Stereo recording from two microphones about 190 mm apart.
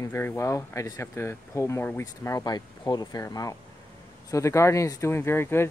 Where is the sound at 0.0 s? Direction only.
10° left (ahead or behind).